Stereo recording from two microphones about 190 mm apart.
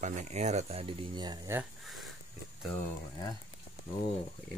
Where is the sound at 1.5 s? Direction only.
5° right (ahead or behind).